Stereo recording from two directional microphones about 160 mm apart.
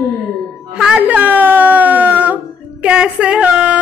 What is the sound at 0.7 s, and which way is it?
Speech, 5° right (ahead or behind).